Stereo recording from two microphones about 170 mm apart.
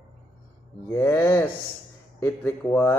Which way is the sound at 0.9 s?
15° left (ahead or behind).